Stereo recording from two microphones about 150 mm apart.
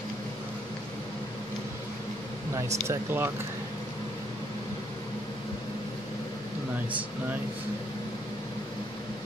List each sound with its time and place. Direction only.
2.5 s speech: 20° right (ahead or behind)